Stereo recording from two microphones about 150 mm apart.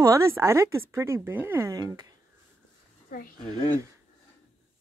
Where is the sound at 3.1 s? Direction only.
70° left (ahead or behind).